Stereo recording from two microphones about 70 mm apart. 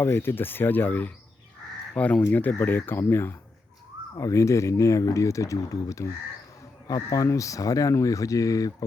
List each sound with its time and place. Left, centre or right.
0.0 s speech: left
4.2 s speech: left
6.8 s speech: left